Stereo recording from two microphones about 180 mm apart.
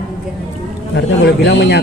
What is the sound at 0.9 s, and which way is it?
Speech, 70° left (ahead or behind).